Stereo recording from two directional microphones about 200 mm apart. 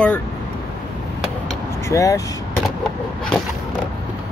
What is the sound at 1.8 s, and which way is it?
Speech, 15° left (ahead or behind).